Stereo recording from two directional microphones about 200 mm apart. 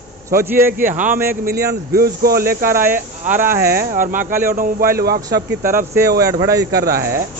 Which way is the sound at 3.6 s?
50° right (ahead or behind).